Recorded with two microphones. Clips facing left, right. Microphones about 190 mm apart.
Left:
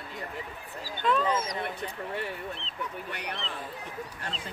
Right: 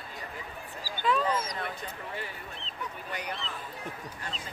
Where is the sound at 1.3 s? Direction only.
20° left (ahead or behind).